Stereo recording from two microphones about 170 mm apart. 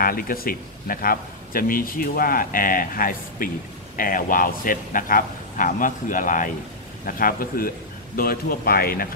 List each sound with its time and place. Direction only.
0.0 s speech: 60° left (ahead or behind)